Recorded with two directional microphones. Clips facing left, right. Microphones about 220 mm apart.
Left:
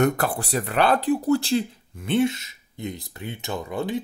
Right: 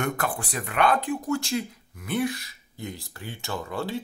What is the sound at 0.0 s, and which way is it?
Speech, 40° left (ahead or behind).